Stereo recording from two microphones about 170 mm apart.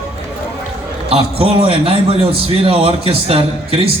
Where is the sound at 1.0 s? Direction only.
35° right (ahead or behind).